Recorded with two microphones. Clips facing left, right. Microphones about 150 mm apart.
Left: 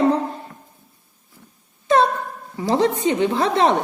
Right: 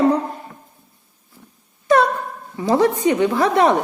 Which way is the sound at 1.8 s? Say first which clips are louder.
Right 1 dB; 25° left (ahead or behind).